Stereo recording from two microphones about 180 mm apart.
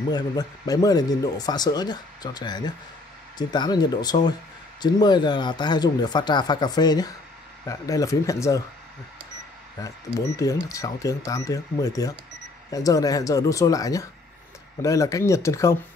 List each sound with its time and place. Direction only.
0.1 s speech: 20° left (ahead or behind)
9.8 s speech: 20° left (ahead or behind)